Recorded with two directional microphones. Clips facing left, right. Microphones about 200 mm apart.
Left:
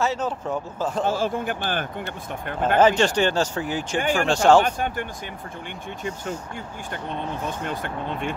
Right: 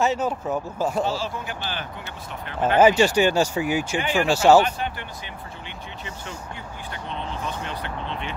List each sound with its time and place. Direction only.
0.0 s speech: 15° right (ahead or behind)
1.0 s speech: 50° left (ahead or behind)
2.8 s speech: 10° right (ahead or behind)
4.6 s speech: 50° left (ahead or behind)
6.9 s speech: 50° left (ahead or behind)